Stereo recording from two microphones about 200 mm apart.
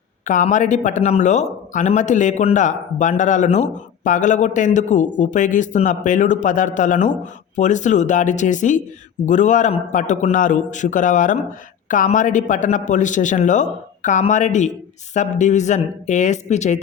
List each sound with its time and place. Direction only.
0.3 s speech: 40° left (ahead or behind)